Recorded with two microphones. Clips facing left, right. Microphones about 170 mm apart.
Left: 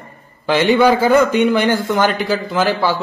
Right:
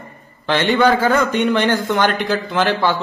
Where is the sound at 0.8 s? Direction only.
10° left (ahead or behind).